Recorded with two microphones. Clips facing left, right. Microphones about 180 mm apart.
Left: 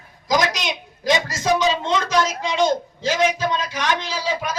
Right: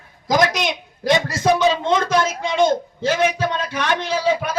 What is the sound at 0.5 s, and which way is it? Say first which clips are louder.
Speech: right 4 dB; 55° right (ahead or behind).